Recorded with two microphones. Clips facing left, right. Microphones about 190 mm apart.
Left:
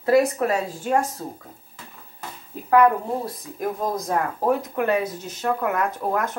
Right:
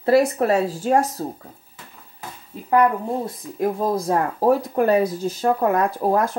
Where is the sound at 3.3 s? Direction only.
25° right (ahead or behind).